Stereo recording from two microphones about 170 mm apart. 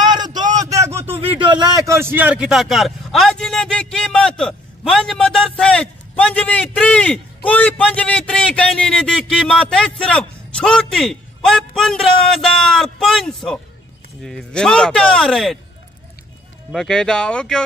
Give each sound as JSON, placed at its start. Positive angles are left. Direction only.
{"t": 0.0, "sound": "a sound", "side_deg": -25}
{"t": 1.1, "sound": "a man's voice", "side_deg": -35}
{"t": 16.7, "sound": "a man's voice", "side_deg": 5}